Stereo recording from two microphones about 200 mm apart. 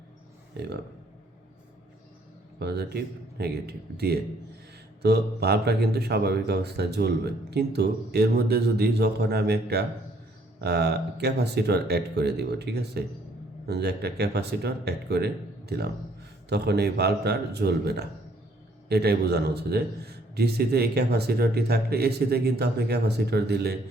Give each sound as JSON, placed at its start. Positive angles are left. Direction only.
{"t": 0.6, "sound": "speech", "side_deg": -55}
{"t": 2.6, "sound": "a man's voice", "side_deg": -55}